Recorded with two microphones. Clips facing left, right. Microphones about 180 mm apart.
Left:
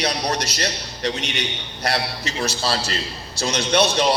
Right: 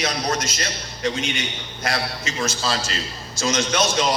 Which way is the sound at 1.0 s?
70° left (ahead or behind).